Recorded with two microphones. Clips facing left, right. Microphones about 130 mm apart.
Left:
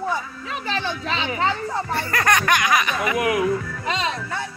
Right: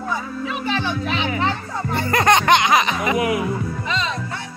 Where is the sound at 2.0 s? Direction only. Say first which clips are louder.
Right 6 dB; 20° right (ahead or behind).